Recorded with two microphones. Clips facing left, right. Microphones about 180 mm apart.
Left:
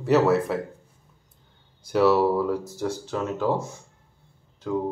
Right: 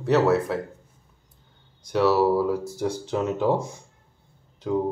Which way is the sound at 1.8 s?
5° left (ahead or behind).